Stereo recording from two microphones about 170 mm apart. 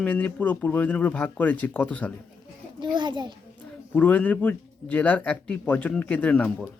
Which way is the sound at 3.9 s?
10° left (ahead or behind).